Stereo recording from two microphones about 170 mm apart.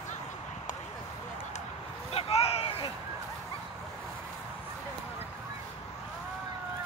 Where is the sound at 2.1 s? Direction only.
35° left (ahead or behind).